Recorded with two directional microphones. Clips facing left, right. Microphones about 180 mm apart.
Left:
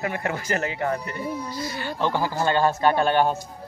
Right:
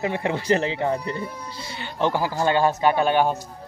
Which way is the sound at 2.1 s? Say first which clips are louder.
Right 1 dB; 10° right (ahead or behind).